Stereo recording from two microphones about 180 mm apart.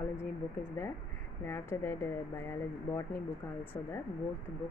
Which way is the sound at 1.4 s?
15° left (ahead or behind).